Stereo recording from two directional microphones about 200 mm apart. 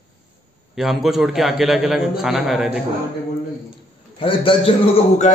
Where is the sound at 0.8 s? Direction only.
Centre (ahead or behind).